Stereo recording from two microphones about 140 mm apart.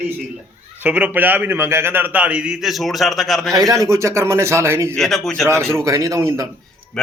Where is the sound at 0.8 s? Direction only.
10° right (ahead or behind).